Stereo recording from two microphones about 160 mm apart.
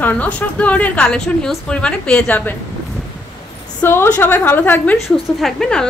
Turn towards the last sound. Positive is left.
turn(degrees=5)  # may be behind; listen again after turning